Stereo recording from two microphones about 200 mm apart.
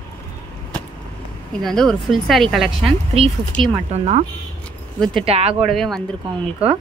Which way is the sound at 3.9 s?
35° right (ahead or behind).